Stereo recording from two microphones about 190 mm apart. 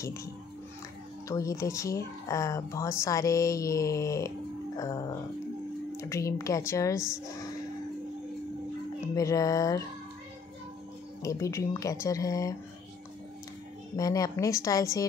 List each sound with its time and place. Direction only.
0.0 s speech: 15° left (ahead or behind)
1.3 s a woman's voice: 15° left (ahead or behind)
9.0 s speech: 15° left (ahead or behind)
11.2 s speech: 15° left (ahead or behind)
13.9 s a woman's voice: 20° left (ahead or behind)